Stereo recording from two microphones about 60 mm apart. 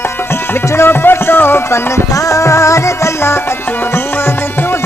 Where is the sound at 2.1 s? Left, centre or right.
Left.